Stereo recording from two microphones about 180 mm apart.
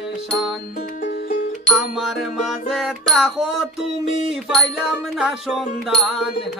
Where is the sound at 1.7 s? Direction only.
Centre (ahead or behind).